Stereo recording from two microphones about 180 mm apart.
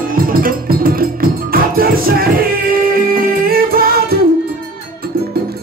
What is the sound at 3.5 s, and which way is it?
Music, 55° right (ahead or behind).